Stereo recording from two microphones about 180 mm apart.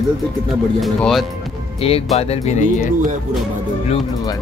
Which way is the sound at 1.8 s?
35° left (ahead or behind).